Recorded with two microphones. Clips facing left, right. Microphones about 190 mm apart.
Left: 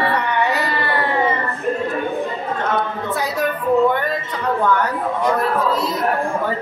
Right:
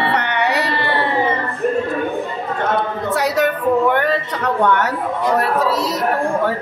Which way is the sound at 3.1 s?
75° right (ahead or behind).